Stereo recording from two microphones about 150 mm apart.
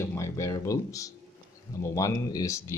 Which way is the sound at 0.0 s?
20° left (ahead or behind).